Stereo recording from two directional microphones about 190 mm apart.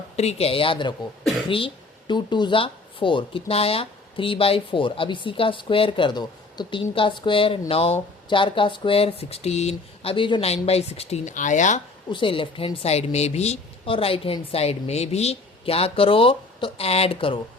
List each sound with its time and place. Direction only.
0.2 s a woman's voice: 35° left (ahead or behind)
12.1 s a woman's voice: 25° left (ahead or behind)